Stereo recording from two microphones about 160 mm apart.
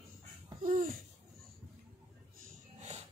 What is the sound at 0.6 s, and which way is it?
Babbling, 55° right (ahead or behind).